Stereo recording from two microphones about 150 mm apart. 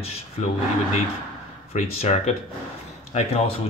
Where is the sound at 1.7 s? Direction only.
45° left (ahead or behind).